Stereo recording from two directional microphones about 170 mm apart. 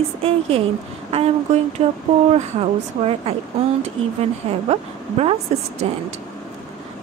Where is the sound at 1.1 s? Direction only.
35° right (ahead or behind).